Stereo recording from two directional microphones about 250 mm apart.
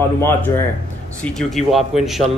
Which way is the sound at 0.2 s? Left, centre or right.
Centre.